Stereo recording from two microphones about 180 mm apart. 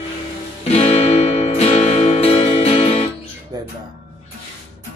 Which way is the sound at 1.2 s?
35° left (ahead or behind).